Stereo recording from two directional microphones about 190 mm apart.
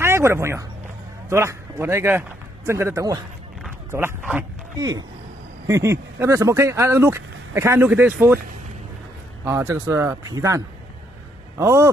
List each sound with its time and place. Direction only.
0.0 s a man's voice: 15° right (ahead or behind)
4.7 s speech: 20° right (ahead or behind)
9.4 s a man's voice: 15° right (ahead or behind)